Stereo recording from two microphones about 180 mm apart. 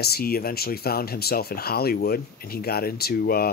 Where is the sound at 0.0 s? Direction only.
60° left (ahead or behind).